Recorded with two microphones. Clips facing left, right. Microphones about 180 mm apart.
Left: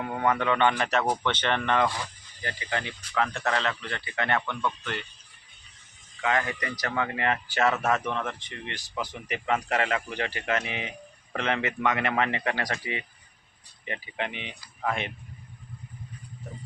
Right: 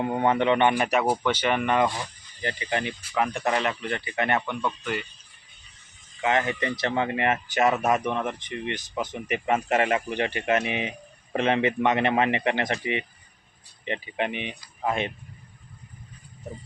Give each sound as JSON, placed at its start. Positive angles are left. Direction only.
{"t": 0.0, "sound": "a man's voice", "side_deg": -25}
{"t": 6.2, "sound": "speech", "side_deg": -25}